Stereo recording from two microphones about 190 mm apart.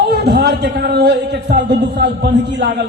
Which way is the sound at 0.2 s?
60° right (ahead or behind).